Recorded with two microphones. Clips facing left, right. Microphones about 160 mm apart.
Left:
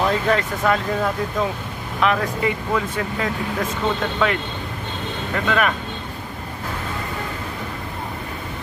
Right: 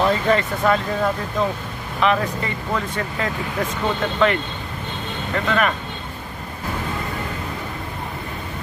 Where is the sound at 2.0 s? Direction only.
Centre (ahead or behind).